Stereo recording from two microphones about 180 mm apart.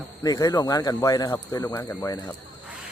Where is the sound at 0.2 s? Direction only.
20° left (ahead or behind).